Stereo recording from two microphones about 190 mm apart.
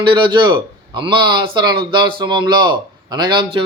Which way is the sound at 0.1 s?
25° right (ahead or behind).